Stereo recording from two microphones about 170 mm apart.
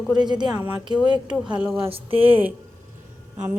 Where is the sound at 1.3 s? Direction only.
5° right (ahead or behind).